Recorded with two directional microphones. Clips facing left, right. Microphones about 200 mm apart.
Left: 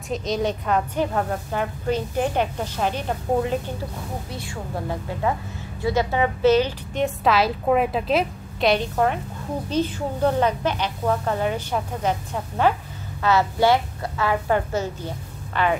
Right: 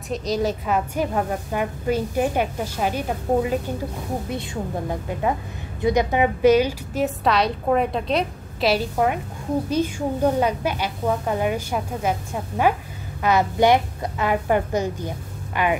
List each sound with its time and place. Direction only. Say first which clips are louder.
0.1 s a woman's voice: right 1 dB; centre (ahead or behind)